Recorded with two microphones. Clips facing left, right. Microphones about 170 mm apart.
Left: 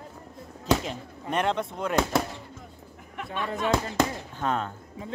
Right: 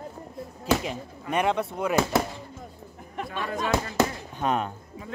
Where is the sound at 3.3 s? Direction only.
40° right (ahead or behind).